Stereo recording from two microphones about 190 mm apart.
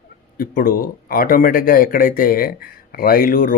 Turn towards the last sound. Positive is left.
turn(degrees=45)  # may be behind; listen again after turning